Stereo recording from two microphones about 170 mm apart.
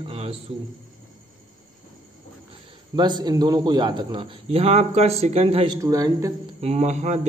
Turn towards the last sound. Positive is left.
turn(degrees=-40)  # may be behind; listen again after turning